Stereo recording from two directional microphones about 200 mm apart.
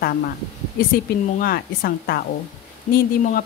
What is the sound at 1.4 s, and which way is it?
Speech, 50° left (ahead or behind).